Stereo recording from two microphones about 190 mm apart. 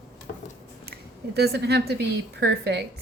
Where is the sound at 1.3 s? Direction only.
60° right (ahead or behind).